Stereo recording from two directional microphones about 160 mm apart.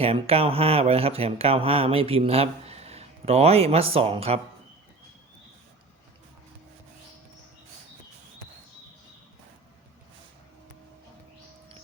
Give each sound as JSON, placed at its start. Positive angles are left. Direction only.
{"t": 0.0, "sound": "speech", "side_deg": -40}